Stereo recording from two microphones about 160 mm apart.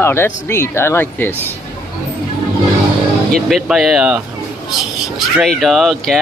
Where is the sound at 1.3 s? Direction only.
15° right (ahead or behind).